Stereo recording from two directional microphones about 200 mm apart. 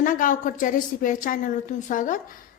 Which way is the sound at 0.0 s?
40° left (ahead or behind).